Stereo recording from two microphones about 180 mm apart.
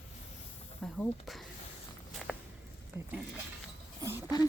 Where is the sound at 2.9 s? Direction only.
15° right (ahead or behind).